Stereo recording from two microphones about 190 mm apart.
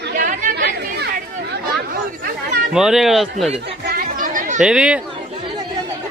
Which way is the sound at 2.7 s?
Centre (ahead or behind).